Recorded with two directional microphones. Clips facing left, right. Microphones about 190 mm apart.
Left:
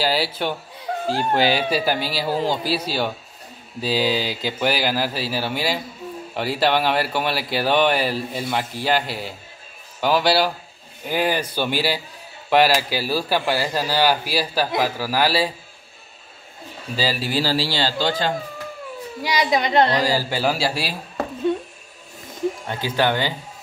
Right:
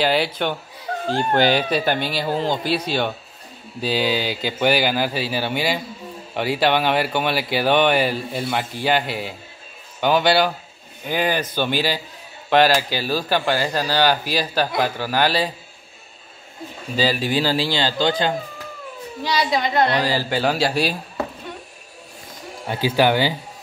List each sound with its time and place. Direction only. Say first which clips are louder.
0.0 s speech: right 2 dB; 5° left (ahead or behind)
16.9 s speech: right 3 dB; 5° left (ahead or behind)
19.2 s speech: even; 15° left (ahead or behind)
20.0 s speech: even; 10° left (ahead or behind)
22.7 s speech: right 6 dB; 10° right (ahead or behind)